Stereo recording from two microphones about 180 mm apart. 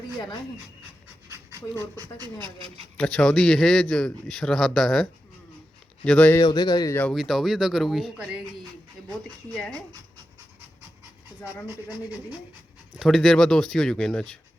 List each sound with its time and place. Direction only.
1.5 s speech: 20° right (ahead or behind)
3.0 s speech: 5° left (ahead or behind)
6.1 s speech: 10° left (ahead or behind)
6.4 s speech: 25° left (ahead or behind)
7.1 s speech: centre (ahead or behind)
9.5 s speech: 5° left (ahead or behind)
12.9 s speech: centre (ahead or behind)